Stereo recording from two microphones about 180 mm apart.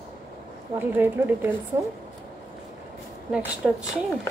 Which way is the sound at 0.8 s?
10° right (ahead or behind).